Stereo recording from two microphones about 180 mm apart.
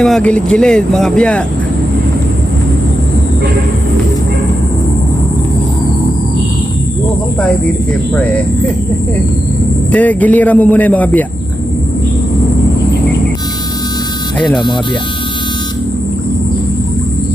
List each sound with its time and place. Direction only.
0.0 s speech: 5° left (ahead or behind)
9.9 s a man's voice: 10° left (ahead or behind)
14.5 s speech: 25° left (ahead or behind)